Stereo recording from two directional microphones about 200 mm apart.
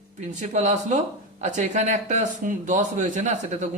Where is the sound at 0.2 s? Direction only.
35° right (ahead or behind).